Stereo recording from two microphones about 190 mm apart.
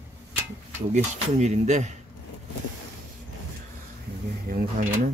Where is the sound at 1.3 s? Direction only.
40° right (ahead or behind).